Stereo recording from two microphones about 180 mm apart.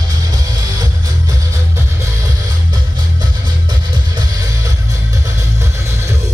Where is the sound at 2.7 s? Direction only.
20° right (ahead or behind).